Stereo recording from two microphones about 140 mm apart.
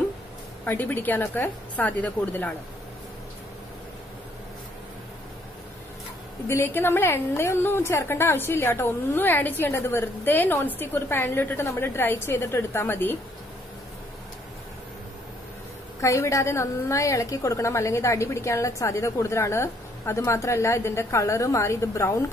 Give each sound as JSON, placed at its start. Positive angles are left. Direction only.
{"t": 0.7, "sound": "a woman's voice", "side_deg": 15}
{"t": 6.4, "sound": "a woman's voice", "side_deg": 15}
{"t": 16.0, "sound": "a woman's voice", "side_deg": 20}